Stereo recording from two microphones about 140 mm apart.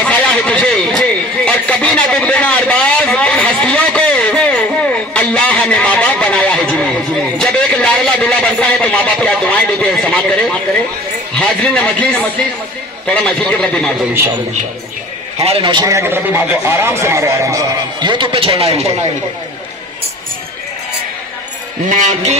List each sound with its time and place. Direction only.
0.0 s a sound: 10° left (ahead or behind)
11.3 s speech: 10° left (ahead or behind)
15.4 s a man's voice: 40° right (ahead or behind)
16.0 s a man's voice: 15° right (ahead or behind); by 19.0 s 45° right (ahead or behind)
21.8 s a man's voice: 60° right (ahead or behind)